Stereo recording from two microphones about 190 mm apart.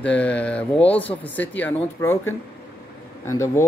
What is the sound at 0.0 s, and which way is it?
Speech, 5° left (ahead or behind).